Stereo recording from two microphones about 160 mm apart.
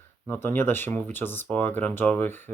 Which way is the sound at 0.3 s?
15° left (ahead or behind).